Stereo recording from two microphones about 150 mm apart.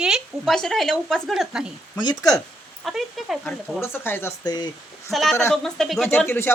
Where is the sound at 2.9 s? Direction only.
Centre (ahead or behind).